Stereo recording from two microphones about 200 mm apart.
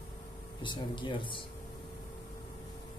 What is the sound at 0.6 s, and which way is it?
Speech, 25° left (ahead or behind).